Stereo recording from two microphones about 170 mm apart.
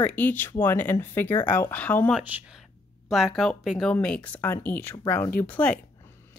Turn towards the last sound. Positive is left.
turn(degrees=10)  # may be behind; listen again after turning